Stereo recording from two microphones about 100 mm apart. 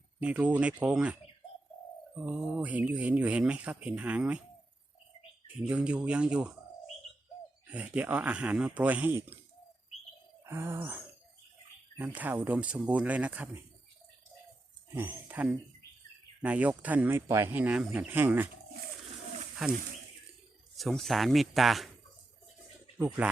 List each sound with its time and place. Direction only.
0.2 s speech: 15° right (ahead or behind)
2.1 s speech: 15° right (ahead or behind)
5.5 s speech: 10° right (ahead or behind)
7.7 s speech: 10° right (ahead or behind)
10.4 s a sound: 25° right (ahead or behind)
11.9 s speech: 15° right (ahead or behind)
14.9 s speech: 25° right (ahead or behind)
16.4 s speech: 15° right (ahead or behind)
19.6 s speech: centre (ahead or behind)
23.0 s speech: 15° right (ahead or behind)